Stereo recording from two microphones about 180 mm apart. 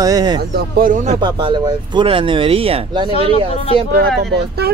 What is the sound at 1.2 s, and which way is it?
Speech, 25° right (ahead or behind).